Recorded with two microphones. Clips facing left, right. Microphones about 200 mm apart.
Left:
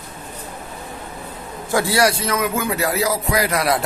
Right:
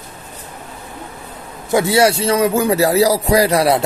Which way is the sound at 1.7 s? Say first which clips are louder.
Right 4 dB; 20° right (ahead or behind).